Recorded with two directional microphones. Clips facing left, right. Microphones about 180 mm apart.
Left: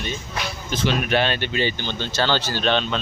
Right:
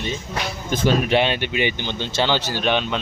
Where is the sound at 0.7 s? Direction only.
45° right (ahead or behind).